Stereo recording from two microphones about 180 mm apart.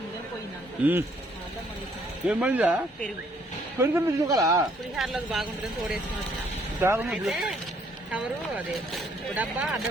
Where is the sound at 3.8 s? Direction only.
15° right (ahead or behind).